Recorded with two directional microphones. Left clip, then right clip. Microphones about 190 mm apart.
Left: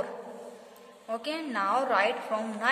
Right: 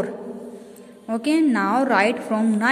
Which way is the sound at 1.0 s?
20° right (ahead or behind).